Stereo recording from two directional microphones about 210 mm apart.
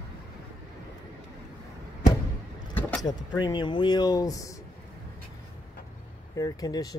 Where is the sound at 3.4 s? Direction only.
20° left (ahead or behind).